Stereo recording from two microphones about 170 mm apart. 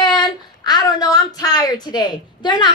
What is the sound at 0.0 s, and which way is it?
A woman's voice, 25° left (ahead or behind).